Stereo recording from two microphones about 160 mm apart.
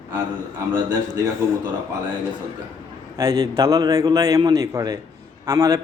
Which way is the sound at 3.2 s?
20° right (ahead or behind).